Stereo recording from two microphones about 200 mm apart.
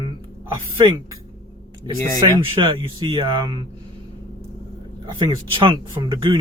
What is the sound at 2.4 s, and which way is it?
Speech, 25° right (ahead or behind).